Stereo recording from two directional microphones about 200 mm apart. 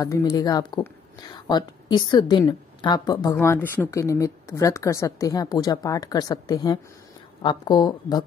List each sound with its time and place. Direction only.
0.0 s speech: 20° left (ahead or behind)